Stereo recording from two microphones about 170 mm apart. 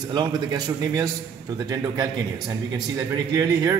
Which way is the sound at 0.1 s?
25° right (ahead or behind).